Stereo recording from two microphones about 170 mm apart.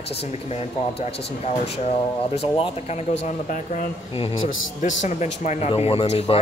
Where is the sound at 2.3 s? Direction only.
35° left (ahead or behind).